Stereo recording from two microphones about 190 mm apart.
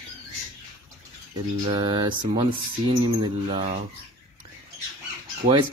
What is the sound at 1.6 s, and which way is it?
Speech, 25° right (ahead or behind).